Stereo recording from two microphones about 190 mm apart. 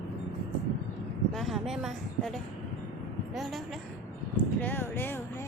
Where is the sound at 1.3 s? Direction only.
Centre (ahead or behind).